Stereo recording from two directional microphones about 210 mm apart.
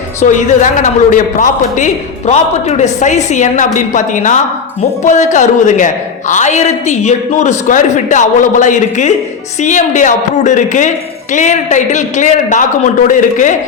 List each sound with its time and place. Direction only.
0.2 s a man's voice: 35° left (ahead or behind)